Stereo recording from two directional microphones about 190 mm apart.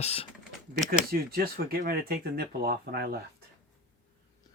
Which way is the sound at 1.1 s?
50° right (ahead or behind).